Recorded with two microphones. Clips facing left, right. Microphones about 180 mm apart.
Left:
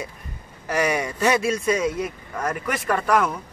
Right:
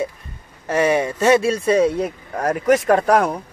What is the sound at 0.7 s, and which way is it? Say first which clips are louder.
A man's voice: right 5 dB; 25° right (ahead or behind).